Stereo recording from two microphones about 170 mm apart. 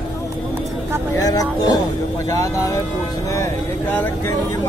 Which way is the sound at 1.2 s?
20° left (ahead or behind).